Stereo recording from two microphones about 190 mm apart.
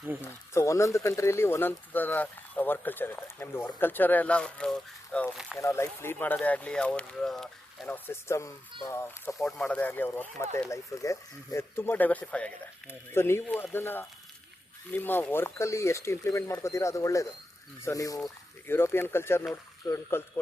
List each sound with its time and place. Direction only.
0.3 s speech: 15° left (ahead or behind)
5.5 s speech: 15° left (ahead or behind)